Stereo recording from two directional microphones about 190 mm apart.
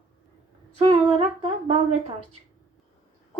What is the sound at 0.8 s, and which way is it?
Humming, 25° right (ahead or behind).